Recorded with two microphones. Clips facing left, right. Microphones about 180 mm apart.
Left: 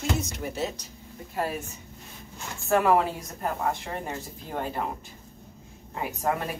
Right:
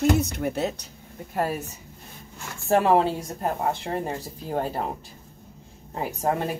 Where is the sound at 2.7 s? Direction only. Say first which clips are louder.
Right 2 dB; 30° right (ahead or behind).